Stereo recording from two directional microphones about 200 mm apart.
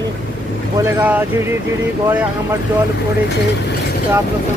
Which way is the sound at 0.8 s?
10° right (ahead or behind).